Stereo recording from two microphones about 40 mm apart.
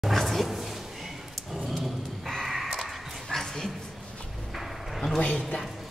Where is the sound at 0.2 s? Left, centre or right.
Centre.